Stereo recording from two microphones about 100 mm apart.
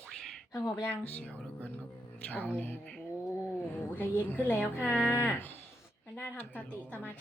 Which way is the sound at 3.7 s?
20° left (ahead or behind).